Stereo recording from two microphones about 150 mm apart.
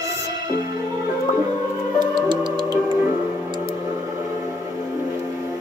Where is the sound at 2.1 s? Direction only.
30° right (ahead or behind).